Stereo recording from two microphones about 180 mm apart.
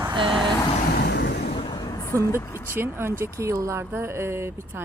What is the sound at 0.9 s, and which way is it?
Vehicle, 65° left (ahead or behind).